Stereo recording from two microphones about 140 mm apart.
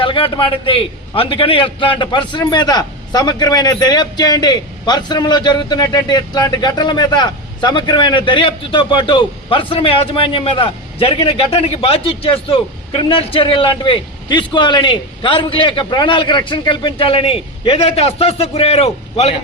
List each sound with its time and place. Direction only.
0.0 s a man's voice: 35° left (ahead or behind)